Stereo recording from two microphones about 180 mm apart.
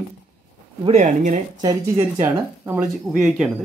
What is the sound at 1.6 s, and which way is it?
A woman's voice, 15° right (ahead or behind).